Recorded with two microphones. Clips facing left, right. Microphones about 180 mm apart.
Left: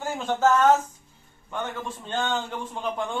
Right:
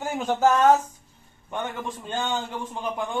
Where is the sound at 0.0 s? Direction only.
15° right (ahead or behind).